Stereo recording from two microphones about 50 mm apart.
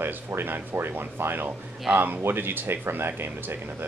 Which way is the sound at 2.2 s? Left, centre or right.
Right.